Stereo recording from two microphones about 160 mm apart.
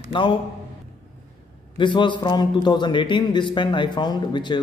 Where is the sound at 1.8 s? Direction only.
30° left (ahead or behind).